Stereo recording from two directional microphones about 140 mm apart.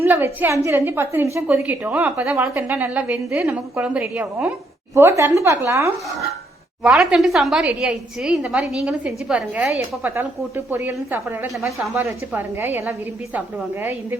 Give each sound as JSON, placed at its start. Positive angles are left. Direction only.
{"t": 0.0, "sound": "a woman's voice", "side_deg": -15}
{"t": 6.8, "sound": "a woman's voice", "side_deg": -5}